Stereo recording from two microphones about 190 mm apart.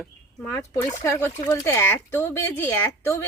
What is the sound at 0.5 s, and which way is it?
Speech, 15° left (ahead or behind).